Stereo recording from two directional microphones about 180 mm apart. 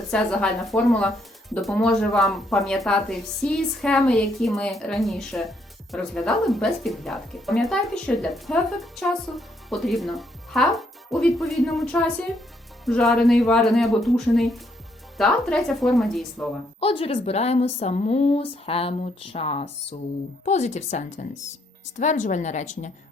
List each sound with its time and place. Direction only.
0.1 s speech: 5° left (ahead or behind)
16.8 s a woman's voice: 30° left (ahead or behind)